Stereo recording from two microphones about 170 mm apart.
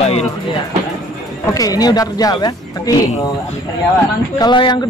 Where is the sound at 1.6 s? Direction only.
20° left (ahead or behind).